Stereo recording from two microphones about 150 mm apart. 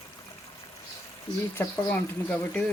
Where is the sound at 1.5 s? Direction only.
10° left (ahead or behind).